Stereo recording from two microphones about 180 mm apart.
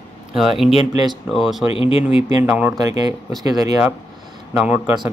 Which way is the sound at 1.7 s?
30° left (ahead or behind).